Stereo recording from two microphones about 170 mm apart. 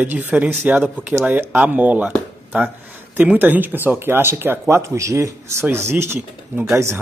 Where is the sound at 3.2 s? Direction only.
10° right (ahead or behind).